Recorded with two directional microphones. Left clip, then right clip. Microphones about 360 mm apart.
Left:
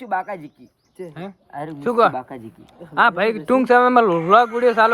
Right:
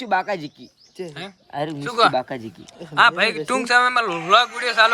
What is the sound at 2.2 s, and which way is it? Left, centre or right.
Speech, right.